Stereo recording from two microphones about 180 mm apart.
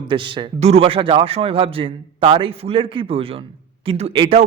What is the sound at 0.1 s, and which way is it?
A man's voice, 25° right (ahead or behind).